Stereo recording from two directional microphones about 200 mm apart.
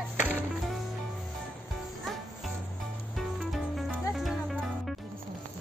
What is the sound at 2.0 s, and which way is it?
Music, centre (ahead or behind).